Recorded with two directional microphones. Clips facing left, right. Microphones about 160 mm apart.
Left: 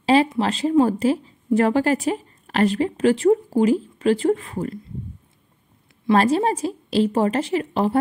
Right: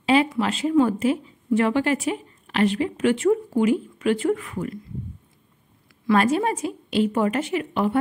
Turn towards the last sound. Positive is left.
turn(degrees=30)  # may be behind; listen again after turning